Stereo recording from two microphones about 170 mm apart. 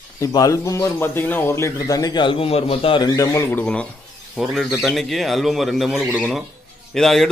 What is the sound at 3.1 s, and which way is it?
A man's voice, 15° left (ahead or behind).